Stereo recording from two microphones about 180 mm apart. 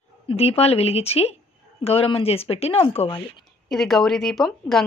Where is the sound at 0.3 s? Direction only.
35° left (ahead or behind).